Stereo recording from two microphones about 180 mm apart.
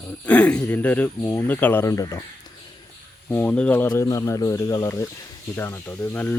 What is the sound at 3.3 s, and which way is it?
Speech, 10° left (ahead or behind).